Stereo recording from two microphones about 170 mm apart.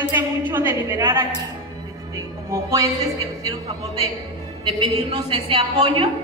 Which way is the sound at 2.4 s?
20° right (ahead or behind).